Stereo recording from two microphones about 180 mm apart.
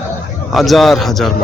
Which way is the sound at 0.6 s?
Centre (ahead or behind).